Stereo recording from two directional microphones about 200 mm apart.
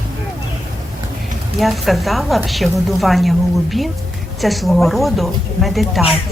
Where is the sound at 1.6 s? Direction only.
Centre (ahead or behind).